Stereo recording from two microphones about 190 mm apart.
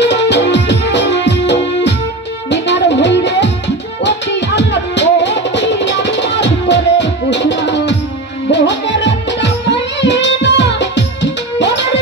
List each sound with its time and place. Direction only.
0.0 s music: 65° left (ahead or behind)